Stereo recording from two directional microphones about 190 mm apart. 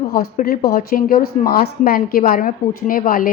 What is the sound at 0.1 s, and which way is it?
A woman's voice, 50° left (ahead or behind).